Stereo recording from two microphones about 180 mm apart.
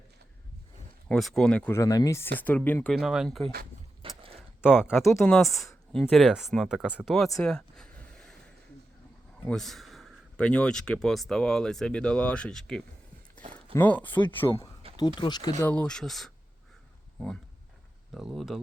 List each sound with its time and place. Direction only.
1.0 s speech: 5° left (ahead or behind)
4.0 s a sound: 30° right (ahead or behind)
4.6 s speech: 5° right (ahead or behind)
7.4 s a sound: 5° left (ahead or behind)
9.4 s speech: 5° left (ahead or behind); by 15.6 s 25° left (ahead or behind)
15.6 s speech: 5° left (ahead or behind)
18.1 s speech: centre (ahead or behind)